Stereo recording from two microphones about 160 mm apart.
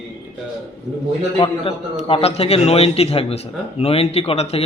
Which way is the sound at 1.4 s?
35° left (ahead or behind).